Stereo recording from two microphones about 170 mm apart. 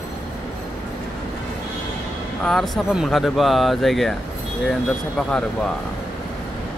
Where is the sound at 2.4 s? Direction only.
Centre (ahead or behind).